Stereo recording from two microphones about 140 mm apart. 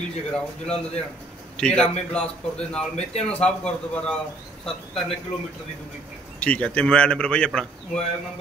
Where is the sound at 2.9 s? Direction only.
45° left (ahead or behind).